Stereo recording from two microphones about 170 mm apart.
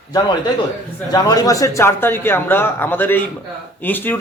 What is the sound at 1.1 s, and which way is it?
A man's voice, 20° left (ahead or behind).